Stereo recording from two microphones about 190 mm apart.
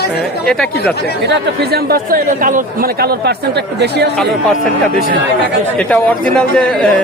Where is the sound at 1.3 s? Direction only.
55° right (ahead or behind).